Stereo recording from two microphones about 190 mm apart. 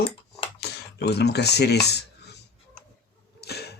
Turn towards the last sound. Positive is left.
turn(degrees=60)  # may be behind; listen again after turning